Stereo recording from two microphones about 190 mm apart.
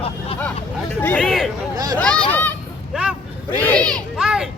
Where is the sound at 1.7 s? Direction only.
20° right (ahead or behind).